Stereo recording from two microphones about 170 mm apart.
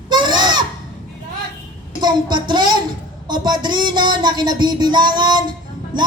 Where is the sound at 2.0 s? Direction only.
25° right (ahead or behind).